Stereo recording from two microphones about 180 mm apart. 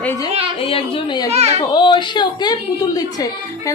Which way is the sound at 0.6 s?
30° left (ahead or behind).